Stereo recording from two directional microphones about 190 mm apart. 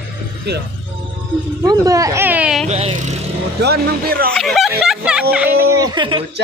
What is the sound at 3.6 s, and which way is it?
Speech, 55° right (ahead or behind).